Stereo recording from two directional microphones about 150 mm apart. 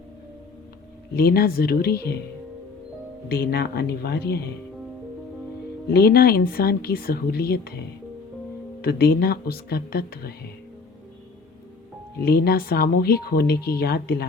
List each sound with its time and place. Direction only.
1.1 s speech: 90° left
3.2 s speech: 90° left
5.9 s speech: 90° left
8.8 s speech: 90° left
12.2 s speech: 90° left